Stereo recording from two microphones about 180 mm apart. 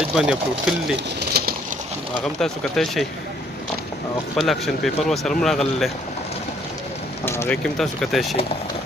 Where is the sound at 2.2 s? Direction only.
Centre (ahead or behind).